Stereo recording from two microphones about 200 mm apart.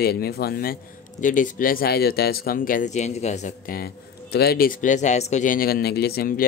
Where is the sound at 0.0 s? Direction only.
50° left (ahead or behind).